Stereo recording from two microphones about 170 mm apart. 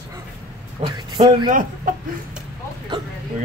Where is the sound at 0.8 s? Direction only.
25° right (ahead or behind).